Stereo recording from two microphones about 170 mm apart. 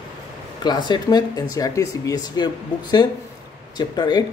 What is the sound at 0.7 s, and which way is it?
Speech, 25° left (ahead or behind).